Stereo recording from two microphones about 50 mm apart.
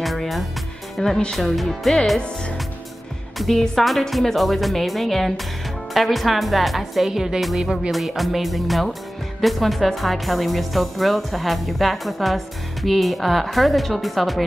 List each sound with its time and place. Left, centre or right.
0.0 s music: centre
0.9 s speech: centre
2.1 s speech: left
3.3 s speech: centre